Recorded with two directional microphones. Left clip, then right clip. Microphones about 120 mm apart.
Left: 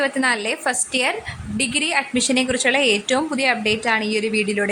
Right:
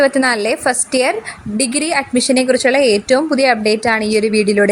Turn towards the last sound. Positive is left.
turn(degrees=-30)  # may be behind; listen again after turning